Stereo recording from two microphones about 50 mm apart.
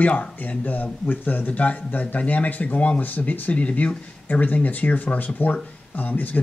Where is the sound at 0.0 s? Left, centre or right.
Left.